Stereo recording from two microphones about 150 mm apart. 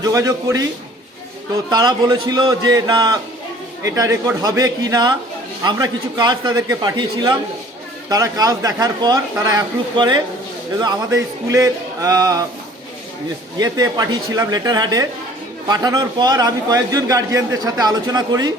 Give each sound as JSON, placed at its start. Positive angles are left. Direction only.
{"t": 0.0, "sound": "a man's voice", "side_deg": -20}
{"t": 1.7, "sound": "a man's voice", "side_deg": -30}
{"t": 13.6, "sound": "a man's voice", "side_deg": -25}